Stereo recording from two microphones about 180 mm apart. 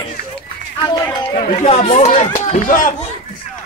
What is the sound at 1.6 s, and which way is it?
Speech, 35° left (ahead or behind).